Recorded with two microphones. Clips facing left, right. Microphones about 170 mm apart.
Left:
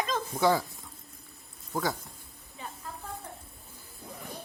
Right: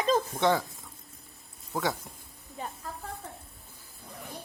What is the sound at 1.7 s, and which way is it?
Speech, centre (ahead or behind).